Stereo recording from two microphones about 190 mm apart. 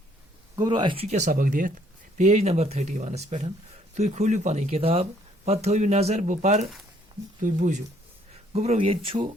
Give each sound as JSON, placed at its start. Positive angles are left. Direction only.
{"t": 0.5, "sound": "speech", "side_deg": -25}